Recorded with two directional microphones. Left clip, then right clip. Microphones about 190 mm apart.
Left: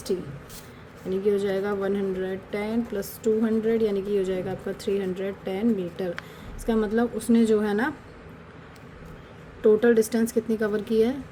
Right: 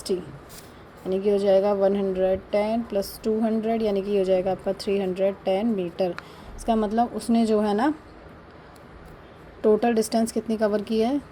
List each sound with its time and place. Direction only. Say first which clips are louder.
1.1 s a woman's voice: right 5 dB; 15° right (ahead or behind)
9.6 s a woman's voice: left 2 dB; 15° right (ahead or behind)